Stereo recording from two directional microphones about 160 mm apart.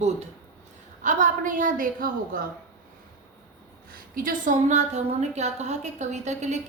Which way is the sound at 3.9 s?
60° right (ahead or behind).